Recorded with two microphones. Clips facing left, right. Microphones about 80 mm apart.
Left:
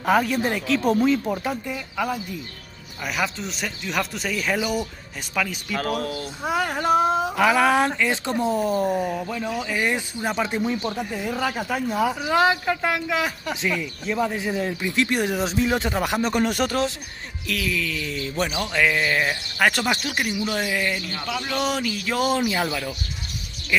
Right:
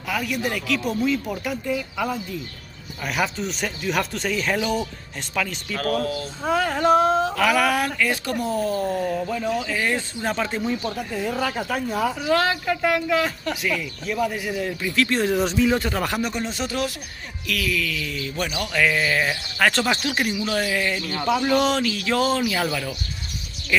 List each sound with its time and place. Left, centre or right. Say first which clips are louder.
0.0 s speech: left 5 dB; left
3.0 s speech: right 2 dB; centre
5.9 s a child's voice: right 3 dB; right
6.4 s speech: right 3 dB; centre
7.3 s speech: left 2 dB; left
9.2 s speech: right 3 dB; centre
16.2 s speech: left 4 dB; left
16.4 s speech: left 5 dB; left
17.5 s speech: right 1 dB; left; by 20.4 s centre
20.4 s speech: right 1 dB; centre
21.3 s speech: right 9 dB; centre
21.5 s speech: right 4 dB; centre
23.7 s speech: right 1 dB; centre